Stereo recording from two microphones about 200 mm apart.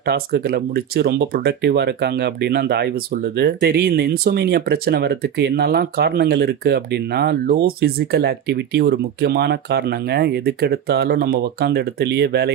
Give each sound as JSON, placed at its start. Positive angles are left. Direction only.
{"t": 0.0, "sound": "speech", "side_deg": -50}